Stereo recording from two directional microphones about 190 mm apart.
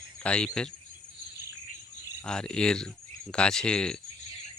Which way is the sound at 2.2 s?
5° left (ahead or behind).